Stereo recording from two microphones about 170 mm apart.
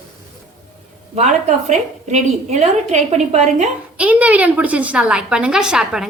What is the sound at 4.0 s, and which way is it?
A woman's voice, 10° right (ahead or behind).